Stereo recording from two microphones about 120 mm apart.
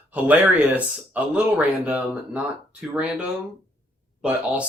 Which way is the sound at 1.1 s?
10° right (ahead or behind).